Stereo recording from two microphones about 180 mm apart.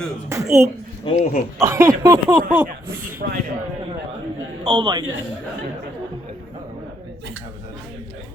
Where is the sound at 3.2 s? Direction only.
60° right (ahead or behind).